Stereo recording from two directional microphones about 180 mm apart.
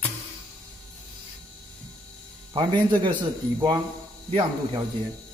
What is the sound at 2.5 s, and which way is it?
A man's voice, 25° right (ahead or behind).